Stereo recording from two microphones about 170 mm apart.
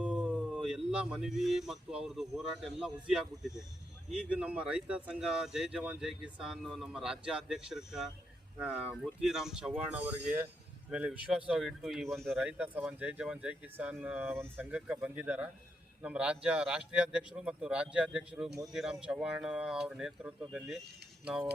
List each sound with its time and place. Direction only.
0.0 s speech: 5° right (ahead or behind)